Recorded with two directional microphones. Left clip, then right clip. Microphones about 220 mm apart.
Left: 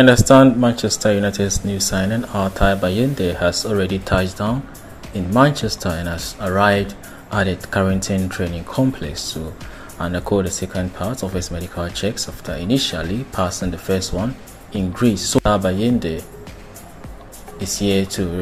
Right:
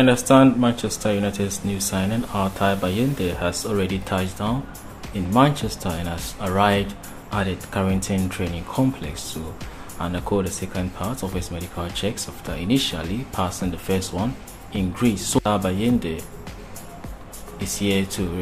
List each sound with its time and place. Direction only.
0.0 s speech: 20° left (ahead or behind)
17.7 s speech: 15° left (ahead or behind)